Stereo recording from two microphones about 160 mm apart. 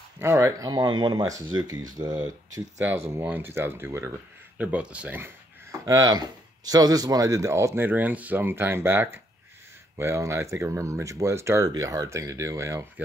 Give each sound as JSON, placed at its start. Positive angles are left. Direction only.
{"t": 0.2, "sound": "speech", "side_deg": -20}
{"t": 3.1, "sound": "speech", "side_deg": -15}